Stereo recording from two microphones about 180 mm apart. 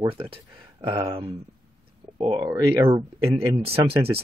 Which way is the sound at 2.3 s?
20° right (ahead or behind).